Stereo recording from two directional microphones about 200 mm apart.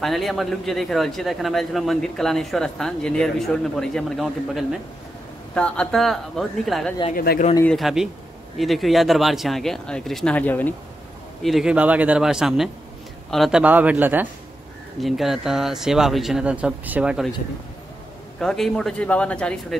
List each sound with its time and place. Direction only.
0.0 s a man's voice: centre (ahead or behind)
7.2 s a man's voice: 45° left (ahead or behind)
7.7 s a man's voice: centre (ahead or behind)
11.4 s a man's voice: centre (ahead or behind)
18.4 s a man's voice: 5° left (ahead or behind)